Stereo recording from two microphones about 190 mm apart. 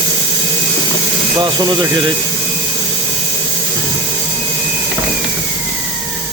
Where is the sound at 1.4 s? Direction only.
20° right (ahead or behind).